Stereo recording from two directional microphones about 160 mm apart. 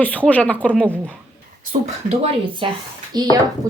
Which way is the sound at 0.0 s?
10° left (ahead or behind).